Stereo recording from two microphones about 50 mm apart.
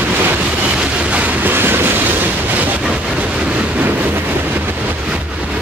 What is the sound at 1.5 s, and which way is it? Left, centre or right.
Train, right.